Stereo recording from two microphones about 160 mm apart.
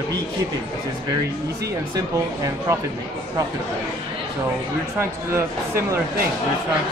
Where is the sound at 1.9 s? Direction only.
20° right (ahead or behind).